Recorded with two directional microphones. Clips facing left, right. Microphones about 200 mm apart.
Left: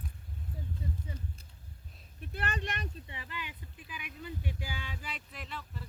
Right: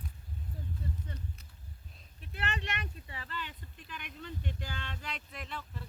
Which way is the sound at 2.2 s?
40° left (ahead or behind).